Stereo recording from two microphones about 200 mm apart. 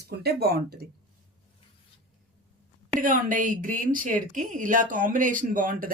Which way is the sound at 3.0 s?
40° right (ahead or behind).